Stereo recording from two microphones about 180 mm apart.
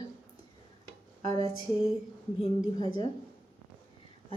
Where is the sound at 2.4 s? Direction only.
30° left (ahead or behind).